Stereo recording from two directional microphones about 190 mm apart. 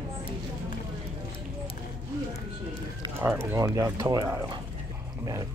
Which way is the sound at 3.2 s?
15° right (ahead or behind).